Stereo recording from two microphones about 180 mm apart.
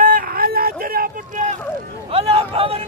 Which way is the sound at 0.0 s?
55° right (ahead or behind).